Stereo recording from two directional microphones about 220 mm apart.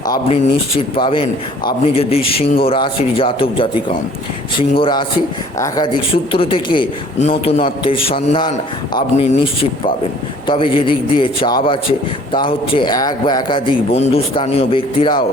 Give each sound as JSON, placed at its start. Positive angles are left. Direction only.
{"t": 0.1, "sound": "a man's voice", "side_deg": 25}
{"t": 9.1, "sound": "a man's voice", "side_deg": 30}